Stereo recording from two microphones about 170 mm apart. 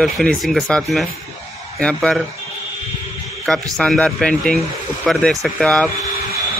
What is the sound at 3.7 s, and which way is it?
Speech, 5° left (ahead or behind).